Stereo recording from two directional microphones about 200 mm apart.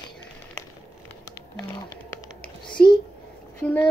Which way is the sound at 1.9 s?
15° left (ahead or behind).